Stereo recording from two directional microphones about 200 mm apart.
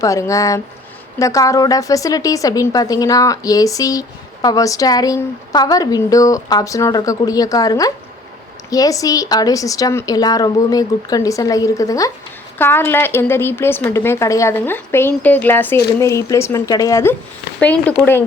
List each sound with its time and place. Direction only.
0.0 s a woman's voice: 15° left (ahead or behind)